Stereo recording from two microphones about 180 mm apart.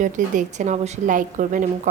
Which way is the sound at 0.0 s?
45° right (ahead or behind).